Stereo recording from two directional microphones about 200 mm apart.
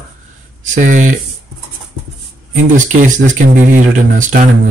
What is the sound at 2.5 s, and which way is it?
Speech, 40° right (ahead or behind).